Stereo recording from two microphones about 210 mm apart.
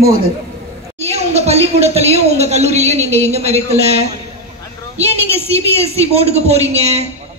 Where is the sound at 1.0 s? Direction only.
30° right (ahead or behind).